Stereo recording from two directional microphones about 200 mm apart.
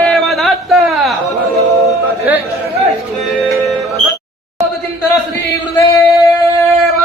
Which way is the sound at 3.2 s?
Centre (ahead or behind).